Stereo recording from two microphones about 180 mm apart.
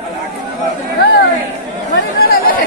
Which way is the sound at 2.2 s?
55° left (ahead or behind).